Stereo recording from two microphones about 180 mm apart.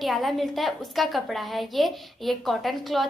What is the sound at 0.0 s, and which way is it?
A woman's voice, centre (ahead or behind).